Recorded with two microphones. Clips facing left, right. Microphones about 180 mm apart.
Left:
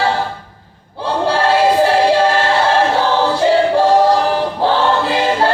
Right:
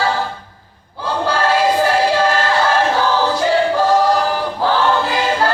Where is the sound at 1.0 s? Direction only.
30° left (ahead or behind).